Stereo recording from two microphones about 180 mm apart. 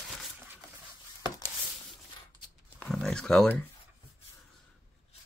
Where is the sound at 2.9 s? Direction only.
5° left (ahead or behind).